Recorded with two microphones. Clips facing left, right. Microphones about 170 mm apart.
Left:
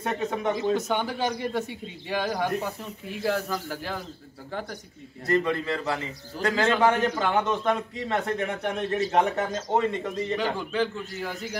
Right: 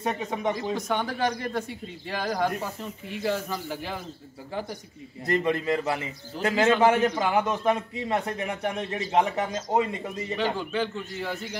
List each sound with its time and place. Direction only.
0.0 s a man's voice: centre (ahead or behind)
5.2 s a man's voice: 15° right (ahead or behind); by 11.5 s centre (ahead or behind)